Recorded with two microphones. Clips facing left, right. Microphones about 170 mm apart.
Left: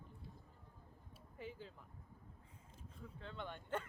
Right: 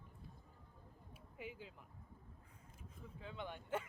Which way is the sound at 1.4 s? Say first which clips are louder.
Left 1 dB; 10° right (ahead or behind).